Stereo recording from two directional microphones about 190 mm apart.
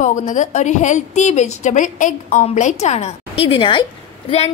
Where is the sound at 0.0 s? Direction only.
40° left (ahead or behind).